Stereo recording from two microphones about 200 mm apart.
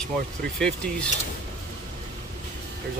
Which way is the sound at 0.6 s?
5° left (ahead or behind).